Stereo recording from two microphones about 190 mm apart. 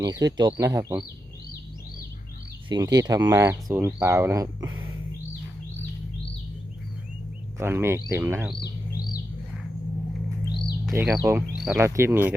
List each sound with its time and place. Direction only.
0.0 s speech: 20° right (ahead or behind)
2.6 s speech: 20° right (ahead or behind)
7.6 s speech: 15° right (ahead or behind)
8.6 s bird: 50° left (ahead or behind)
10.9 s speech: 15° right (ahead or behind)
11.5 s a sound: centre (ahead or behind)
11.8 s speech: 15° right (ahead or behind)